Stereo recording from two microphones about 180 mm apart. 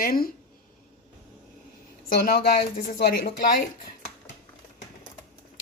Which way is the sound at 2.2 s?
55° left (ahead or behind).